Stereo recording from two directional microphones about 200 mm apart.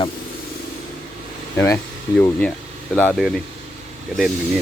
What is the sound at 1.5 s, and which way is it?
Speech, 15° left (ahead or behind).